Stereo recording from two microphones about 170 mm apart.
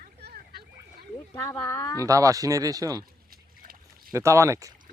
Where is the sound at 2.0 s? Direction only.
20° right (ahead or behind).